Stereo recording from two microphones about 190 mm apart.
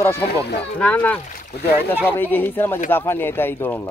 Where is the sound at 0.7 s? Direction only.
5° left (ahead or behind).